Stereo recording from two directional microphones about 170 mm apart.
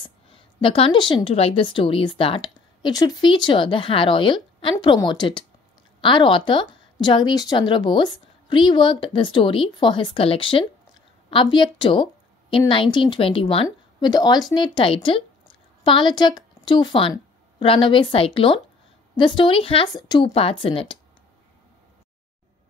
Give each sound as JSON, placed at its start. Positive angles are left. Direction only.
{"t": 0.0, "sound": "a woman's voice", "side_deg": 30}